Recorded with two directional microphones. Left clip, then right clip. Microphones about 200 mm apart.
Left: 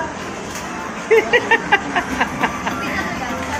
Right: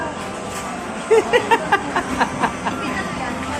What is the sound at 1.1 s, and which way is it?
Speech, 10° right (ahead or behind).